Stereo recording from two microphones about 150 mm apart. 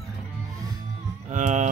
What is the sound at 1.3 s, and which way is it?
Speech, 50° right (ahead or behind).